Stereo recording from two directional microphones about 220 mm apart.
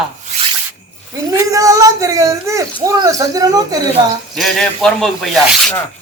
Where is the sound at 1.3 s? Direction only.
15° right (ahead or behind).